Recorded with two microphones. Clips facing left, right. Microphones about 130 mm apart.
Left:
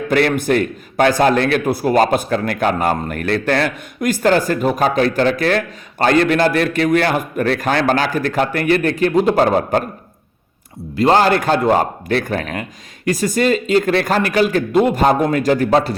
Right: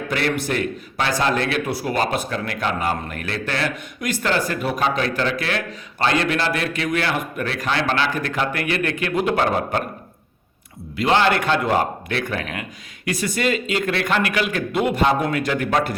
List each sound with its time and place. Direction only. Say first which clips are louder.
0.1 s a man's voice: left 8 dB; 50° left (ahead or behind)
10.9 s a man's voice: left 5 dB; 40° left (ahead or behind)